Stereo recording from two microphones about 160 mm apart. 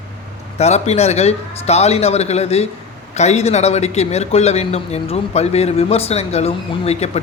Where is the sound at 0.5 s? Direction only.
45° left (ahead or behind).